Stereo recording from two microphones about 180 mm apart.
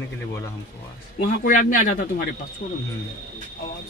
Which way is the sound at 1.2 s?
45° left (ahead or behind).